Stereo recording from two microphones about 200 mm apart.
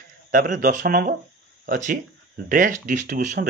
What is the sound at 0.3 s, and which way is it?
Speech, 45° right (ahead or behind).